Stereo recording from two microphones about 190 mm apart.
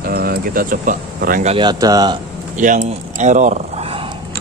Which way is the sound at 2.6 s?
40° right (ahead or behind).